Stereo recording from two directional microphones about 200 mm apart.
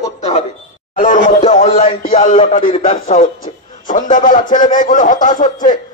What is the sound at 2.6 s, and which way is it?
A man's voice, 40° left (ahead or behind).